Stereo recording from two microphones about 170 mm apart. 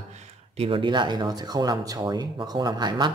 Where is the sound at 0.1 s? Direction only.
40° right (ahead or behind).